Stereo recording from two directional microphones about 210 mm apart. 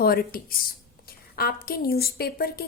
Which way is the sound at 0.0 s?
45° left (ahead or behind).